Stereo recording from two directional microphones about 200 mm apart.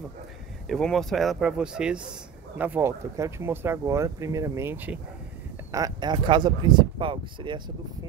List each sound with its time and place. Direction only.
0.7 s speech: centre (ahead or behind); by 7.6 s 25° right (ahead or behind)